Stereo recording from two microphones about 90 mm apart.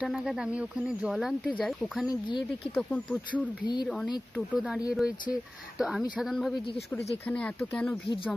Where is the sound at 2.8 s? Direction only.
15° left (ahead or behind).